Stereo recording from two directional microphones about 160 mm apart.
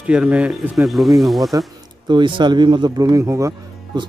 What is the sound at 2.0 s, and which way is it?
Speech, 30° right (ahead or behind).